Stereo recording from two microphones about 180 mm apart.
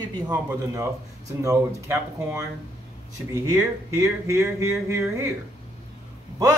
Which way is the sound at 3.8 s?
15° right (ahead or behind).